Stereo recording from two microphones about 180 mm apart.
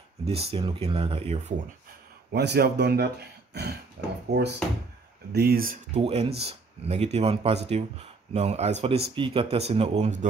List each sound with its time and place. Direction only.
0.3 s speech: 35° right (ahead or behind)
2.3 s speech: 65° right (ahead or behind)
4.3 s speech: 70° right (ahead or behind)
5.9 s speech: 35° right (ahead or behind)